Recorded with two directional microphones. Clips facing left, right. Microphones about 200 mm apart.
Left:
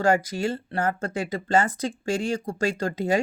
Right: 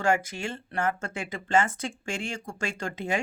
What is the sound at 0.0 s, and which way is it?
Speech, 35° left (ahead or behind).